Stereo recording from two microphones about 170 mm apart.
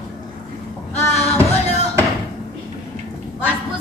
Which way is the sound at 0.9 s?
40° left (ahead or behind).